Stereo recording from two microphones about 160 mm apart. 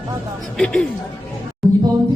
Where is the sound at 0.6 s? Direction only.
5° left (ahead or behind).